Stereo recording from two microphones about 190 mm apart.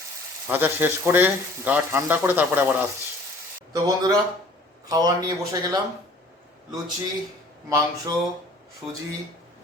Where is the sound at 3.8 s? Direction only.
20° right (ahead or behind).